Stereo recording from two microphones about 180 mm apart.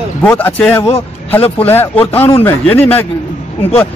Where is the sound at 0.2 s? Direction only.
10° left (ahead or behind).